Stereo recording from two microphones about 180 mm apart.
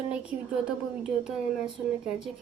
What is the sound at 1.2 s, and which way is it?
Speech, centre (ahead or behind).